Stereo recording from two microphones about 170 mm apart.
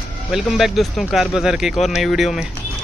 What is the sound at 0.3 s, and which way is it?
Speech, centre (ahead or behind).